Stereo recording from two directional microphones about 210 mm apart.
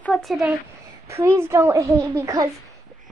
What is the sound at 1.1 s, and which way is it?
A child's voice, 15° right (ahead or behind).